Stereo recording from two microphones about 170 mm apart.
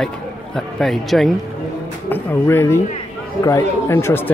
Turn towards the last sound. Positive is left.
turn(degrees=15)  # may be behind; listen again after turning